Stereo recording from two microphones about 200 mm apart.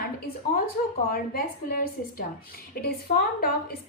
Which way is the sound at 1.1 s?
50° left (ahead or behind).